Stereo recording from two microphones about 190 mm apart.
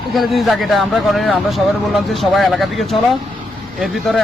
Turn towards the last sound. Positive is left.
turn(degrees=0)  # may be behind; listen again after turning